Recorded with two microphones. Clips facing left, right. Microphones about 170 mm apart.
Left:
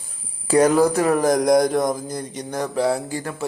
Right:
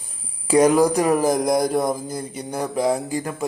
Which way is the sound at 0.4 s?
10° right (ahead or behind).